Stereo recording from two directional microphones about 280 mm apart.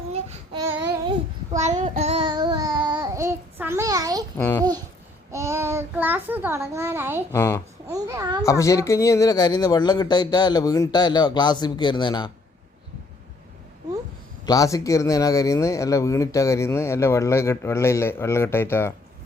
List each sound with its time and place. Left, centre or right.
0.1 s child singing: right
1.6 s child singing: right
4.4 s a man's voice: centre
5.3 s child singing: centre
7.3 s a man's voice: centre
7.9 s a child's voice: centre
8.4 s a man's voice: centre
14.4 s a man's voice: centre